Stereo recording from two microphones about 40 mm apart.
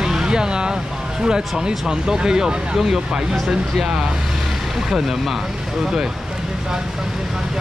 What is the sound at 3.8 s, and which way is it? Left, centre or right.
Speech, centre.